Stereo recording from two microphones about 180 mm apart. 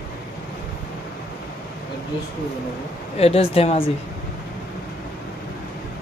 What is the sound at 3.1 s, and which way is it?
Speech, 35° left (ahead or behind).